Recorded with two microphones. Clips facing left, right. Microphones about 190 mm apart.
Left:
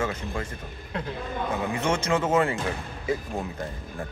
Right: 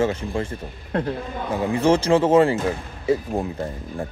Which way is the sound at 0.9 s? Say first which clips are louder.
Right 9 dB; 50° right (ahead or behind).